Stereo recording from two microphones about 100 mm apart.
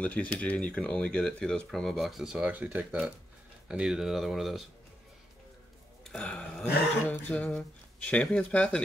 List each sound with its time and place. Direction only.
0.0 s speech: 15° left (ahead or behind); by 2.4 s 5° right (ahead or behind)
2.4 s speech: 15° right (ahead or behind); by 4.6 s centre (ahead or behind)
6.1 s speech: 10° left (ahead or behind)